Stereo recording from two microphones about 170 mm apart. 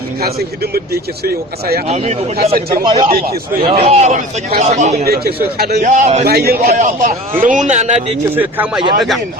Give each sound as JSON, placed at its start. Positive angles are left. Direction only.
{"t": 0.2, "sound": "speech", "side_deg": -65}
{"t": 1.9, "sound": "speech", "side_deg": -40}
{"t": 2.6, "sound": "speech", "side_deg": -60}
{"t": 2.8, "sound": "speech", "side_deg": -25}
{"t": 5.0, "sound": "a man's voice", "side_deg": -65}
{"t": 5.8, "sound": "speech", "side_deg": -45}
{"t": 6.2, "sound": "speech", "side_deg": -65}
{"t": 6.7, "sound": "speech", "side_deg": -45}
{"t": 8.4, "sound": "speech", "side_deg": -10}
{"t": 9.0, "sound": "speech", "side_deg": 0}